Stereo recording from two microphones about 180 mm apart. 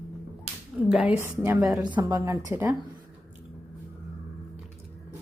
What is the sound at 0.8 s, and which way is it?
Speech, 5° right (ahead or behind).